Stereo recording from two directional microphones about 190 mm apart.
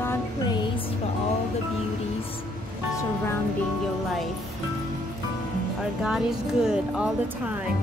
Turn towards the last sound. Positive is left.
turn(degrees=-5)  # may be behind; listen again after turning